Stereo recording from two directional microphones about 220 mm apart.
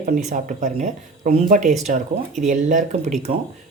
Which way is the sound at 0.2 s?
35° right (ahead or behind).